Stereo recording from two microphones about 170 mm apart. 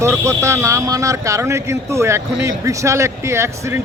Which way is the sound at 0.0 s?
15° right (ahead or behind).